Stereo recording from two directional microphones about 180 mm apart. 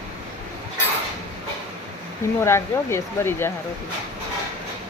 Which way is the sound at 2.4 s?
15° left (ahead or behind).